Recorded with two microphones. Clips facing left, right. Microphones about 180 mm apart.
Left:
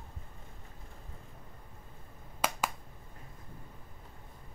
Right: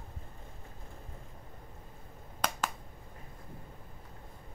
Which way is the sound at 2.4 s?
5° left (ahead or behind).